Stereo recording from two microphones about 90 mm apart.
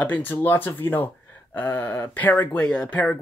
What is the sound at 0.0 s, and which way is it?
Speech, 20° left (ahead or behind).